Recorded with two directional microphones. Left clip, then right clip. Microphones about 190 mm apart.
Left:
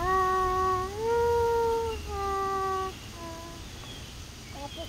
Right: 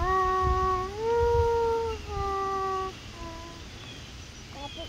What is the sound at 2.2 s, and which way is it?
Vehicle, 50° left (ahead or behind).